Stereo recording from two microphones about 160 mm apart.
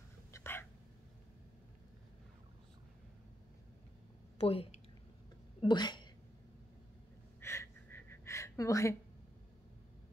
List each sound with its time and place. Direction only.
0.3 s whispering: 15° left (ahead or behind)
4.4 s a woman's voice: 35° left (ahead or behind)
7.3 s a sound: 15° left (ahead or behind)